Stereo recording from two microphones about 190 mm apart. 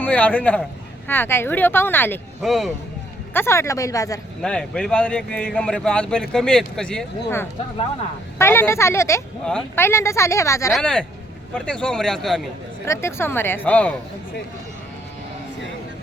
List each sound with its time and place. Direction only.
0.0 s speech: 10° left (ahead or behind)
2.4 s a man's voice: centre (ahead or behind)
3.3 s speech: 15° left (ahead or behind)
4.4 s a man's voice: 5° left (ahead or behind)
10.7 s a man's voice: centre (ahead or behind)
12.8 s speech: 15° left (ahead or behind)